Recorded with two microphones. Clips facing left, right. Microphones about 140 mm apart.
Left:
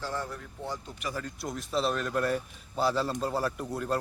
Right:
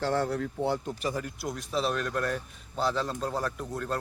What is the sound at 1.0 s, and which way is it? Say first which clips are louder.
Speech: right 4 dB; 25° right (ahead or behind).